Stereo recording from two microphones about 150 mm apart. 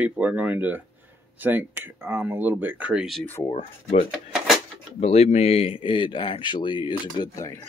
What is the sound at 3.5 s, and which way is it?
Speech, 40° left (ahead or behind).